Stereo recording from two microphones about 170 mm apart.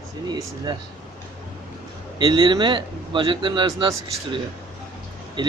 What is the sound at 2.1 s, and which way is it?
A man's voice, 30° right (ahead or behind).